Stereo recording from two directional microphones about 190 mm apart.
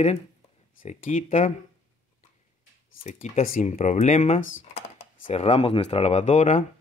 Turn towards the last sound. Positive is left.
turn(degrees=35)  # may be behind; listen again after turning